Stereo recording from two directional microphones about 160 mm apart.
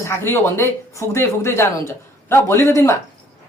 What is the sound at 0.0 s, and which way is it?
Speech, 15° left (ahead or behind).